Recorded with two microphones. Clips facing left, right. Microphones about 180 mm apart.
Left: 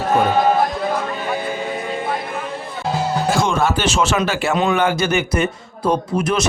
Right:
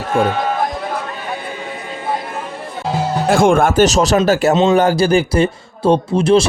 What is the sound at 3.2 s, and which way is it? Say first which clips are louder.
Speech: right 8 dB; 55° right (ahead or behind).